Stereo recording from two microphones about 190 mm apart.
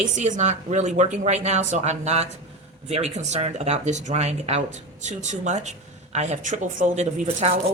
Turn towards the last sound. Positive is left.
turn(degrees=-35)  # may be behind; listen again after turning